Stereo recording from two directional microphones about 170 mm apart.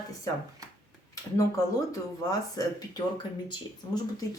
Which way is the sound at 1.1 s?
20° left (ahead or behind).